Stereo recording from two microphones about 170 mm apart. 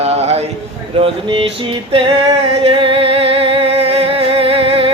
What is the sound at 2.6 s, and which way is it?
Music, 30° right (ahead or behind).